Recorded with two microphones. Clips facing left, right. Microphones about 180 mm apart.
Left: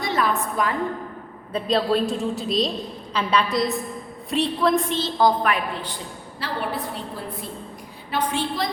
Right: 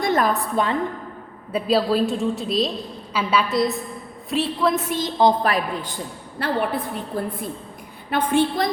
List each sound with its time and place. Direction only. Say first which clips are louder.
0.0 s a sound: right 3 dB; 45° right (ahead or behind)
0.5 s a woman's voice: right 3 dB; 25° right (ahead or behind)
1.5 s a woman's voice: right 2 dB; 5° right (ahead or behind)
5.4 s a woman's voice: right 2 dB; 35° right (ahead or behind); by 7.0 s 55° right (ahead or behind)
8.1 s a woman's voice: right 5 dB; 55° right (ahead or behind)